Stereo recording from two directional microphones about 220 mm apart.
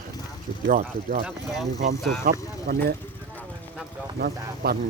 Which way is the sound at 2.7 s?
40° right (ahead or behind).